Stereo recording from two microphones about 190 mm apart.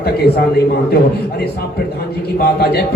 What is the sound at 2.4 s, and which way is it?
Speech, 55° left (ahead or behind).